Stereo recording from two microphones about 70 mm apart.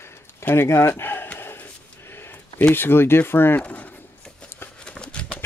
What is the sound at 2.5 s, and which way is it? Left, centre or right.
Speech, left.